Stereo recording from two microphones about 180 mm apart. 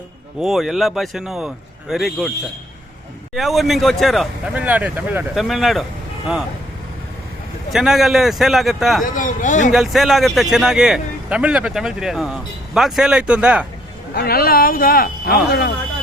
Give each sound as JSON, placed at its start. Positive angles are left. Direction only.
{"t": 0.3, "sound": "a man's voice", "side_deg": 0}
{"t": 3.3, "sound": "a man's voice", "side_deg": 0}
{"t": 7.7, "sound": "a man's voice", "side_deg": 0}
{"t": 9.0, "sound": "speech", "side_deg": 45}
{"t": 9.7, "sound": "a man's voice", "side_deg": 0}
{"t": 14.1, "sound": "speech", "side_deg": 60}